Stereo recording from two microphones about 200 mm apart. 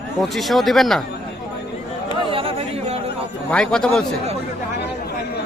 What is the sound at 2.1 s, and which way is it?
Chatter, 25° right (ahead or behind).